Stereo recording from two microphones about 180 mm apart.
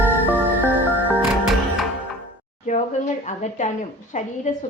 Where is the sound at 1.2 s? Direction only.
Centre (ahead or behind).